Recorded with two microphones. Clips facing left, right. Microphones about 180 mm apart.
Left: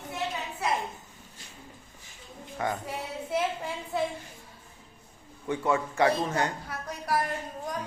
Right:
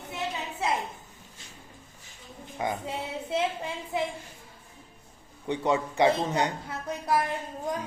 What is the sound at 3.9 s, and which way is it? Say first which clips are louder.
Speech: left 1 dB; 20° right (ahead or behind).